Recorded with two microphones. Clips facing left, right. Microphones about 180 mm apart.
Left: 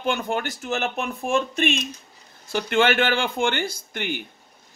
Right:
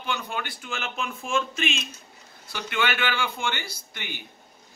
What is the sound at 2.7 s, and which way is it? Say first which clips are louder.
A man's voice: left 7 dB; 50° left (ahead or behind).